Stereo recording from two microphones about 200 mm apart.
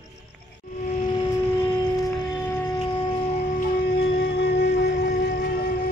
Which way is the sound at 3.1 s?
40° left (ahead or behind).